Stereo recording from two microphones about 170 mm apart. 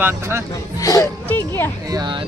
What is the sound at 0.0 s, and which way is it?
Speech, 15° right (ahead or behind).